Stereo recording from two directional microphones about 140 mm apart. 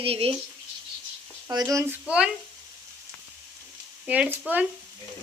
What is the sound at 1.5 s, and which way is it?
Speech, 25° right (ahead or behind).